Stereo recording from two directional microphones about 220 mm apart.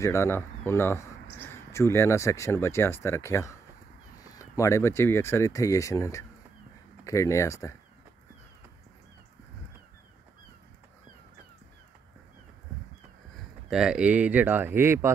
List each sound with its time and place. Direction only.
0.0 s speech: 10° left (ahead or behind)
13.7 s speech: 5° right (ahead or behind)